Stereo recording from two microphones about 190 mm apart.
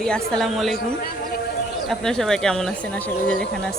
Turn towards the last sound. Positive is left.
turn(degrees=5)  # may be behind; listen again after turning